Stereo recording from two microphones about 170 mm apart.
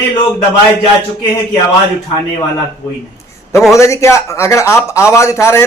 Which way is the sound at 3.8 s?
15° left (ahead or behind).